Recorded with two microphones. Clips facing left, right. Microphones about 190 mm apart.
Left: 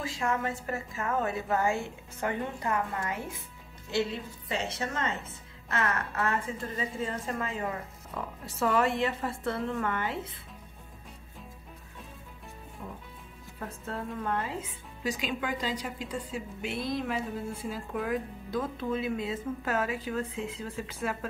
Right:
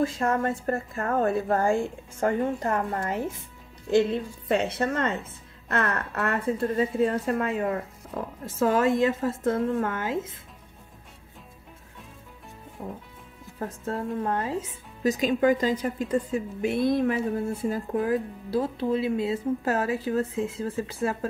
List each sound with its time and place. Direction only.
0.4 s a woman's voice: 55° right (ahead or behind)
3.9 s a woman's voice: 55° right (ahead or behind)
8.1 s speech: 45° right (ahead or behind)
12.8 s speech: 40° right (ahead or behind)
17.9 s speech: 35° right (ahead or behind)